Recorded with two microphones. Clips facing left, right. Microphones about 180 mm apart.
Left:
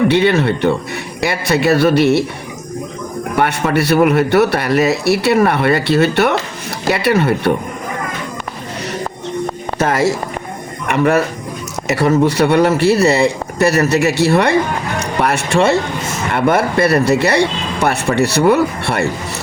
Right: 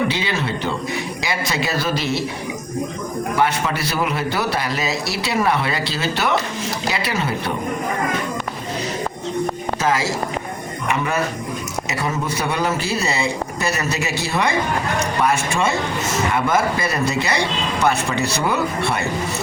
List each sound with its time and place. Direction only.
0.1 s a man's voice: 60° left (ahead or behind)
3.3 s a man's voice: 60° left (ahead or behind)
9.7 s a man's voice: 60° left (ahead or behind)